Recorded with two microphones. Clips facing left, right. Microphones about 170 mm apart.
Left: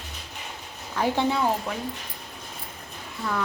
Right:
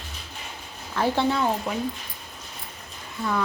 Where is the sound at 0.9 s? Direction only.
15° left (ahead or behind).